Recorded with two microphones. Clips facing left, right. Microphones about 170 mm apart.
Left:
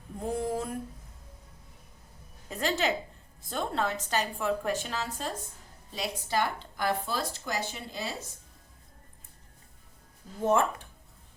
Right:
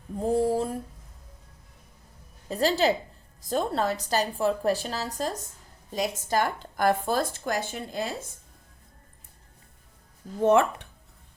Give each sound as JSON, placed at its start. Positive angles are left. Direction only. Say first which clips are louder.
{"t": 0.3, "sound": "a sound", "louder": "right 7 dB", "side_deg": -30}
{"t": 2.5, "sound": "a woman's voice", "louder": "right 6 dB", "side_deg": -35}
{"t": 10.4, "sound": "speech", "louder": "right 5 dB", "side_deg": -70}